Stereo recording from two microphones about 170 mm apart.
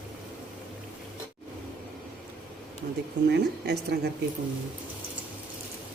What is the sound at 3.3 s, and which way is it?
Speech, 80° right.